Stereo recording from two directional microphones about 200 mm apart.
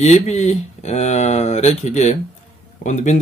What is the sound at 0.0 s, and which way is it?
Speech, 35° left (ahead or behind).